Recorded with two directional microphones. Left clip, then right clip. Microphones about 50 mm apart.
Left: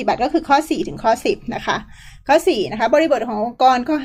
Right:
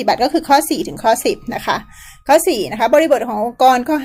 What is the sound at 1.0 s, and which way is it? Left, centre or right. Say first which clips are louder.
Speech: right 3 dB; right.